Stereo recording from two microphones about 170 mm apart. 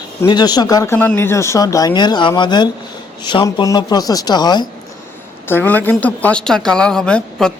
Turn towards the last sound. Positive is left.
turn(degrees=5)  # may be behind; listen again after turning